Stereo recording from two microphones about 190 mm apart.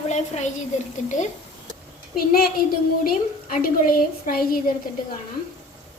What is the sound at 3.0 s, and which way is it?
A woman's voice, 50° left (ahead or behind).